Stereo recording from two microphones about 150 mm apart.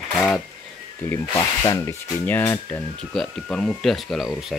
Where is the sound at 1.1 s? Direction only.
20° left (ahead or behind).